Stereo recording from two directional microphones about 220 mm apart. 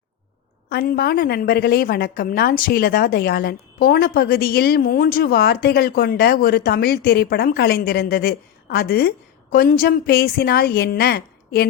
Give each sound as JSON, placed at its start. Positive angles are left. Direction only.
{"t": 0.7, "sound": "a woman's voice", "side_deg": 45}